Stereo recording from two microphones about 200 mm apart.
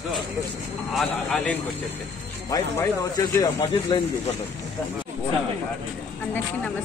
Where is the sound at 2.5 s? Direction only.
20° left (ahead or behind).